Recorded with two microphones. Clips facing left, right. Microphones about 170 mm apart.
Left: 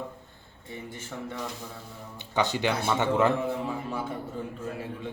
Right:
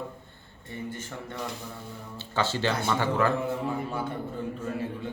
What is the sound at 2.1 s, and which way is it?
A man's voice, 15° left (ahead or behind).